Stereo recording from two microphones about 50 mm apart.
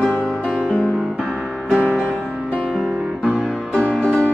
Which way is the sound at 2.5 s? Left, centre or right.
Left.